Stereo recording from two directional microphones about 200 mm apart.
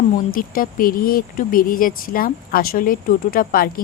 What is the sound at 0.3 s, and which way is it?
Speech, 45° left (ahead or behind).